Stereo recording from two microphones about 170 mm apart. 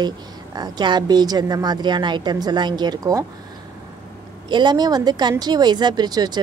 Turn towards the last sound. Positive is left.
turn(degrees=-25)  # may be behind; listen again after turning